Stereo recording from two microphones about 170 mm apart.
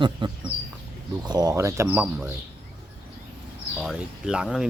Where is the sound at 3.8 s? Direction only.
Centre (ahead or behind).